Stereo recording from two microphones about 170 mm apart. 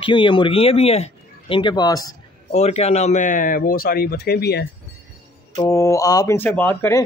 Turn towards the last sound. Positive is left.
turn(degrees=10)  # may be behind; listen again after turning